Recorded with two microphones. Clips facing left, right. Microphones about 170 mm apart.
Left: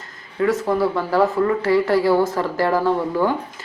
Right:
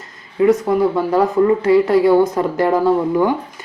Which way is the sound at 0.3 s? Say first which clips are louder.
Right 5 dB; 20° right (ahead or behind).